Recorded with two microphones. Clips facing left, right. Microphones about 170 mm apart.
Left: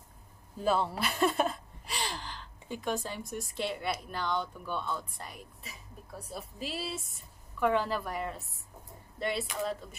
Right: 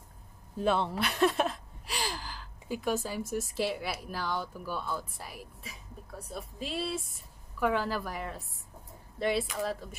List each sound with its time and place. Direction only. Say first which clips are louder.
0.7 s a woman's voice: even; 5° left (ahead or behind)